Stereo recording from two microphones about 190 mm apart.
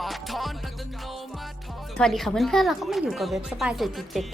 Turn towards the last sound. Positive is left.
turn(degrees=0)  # may be behind; listen again after turning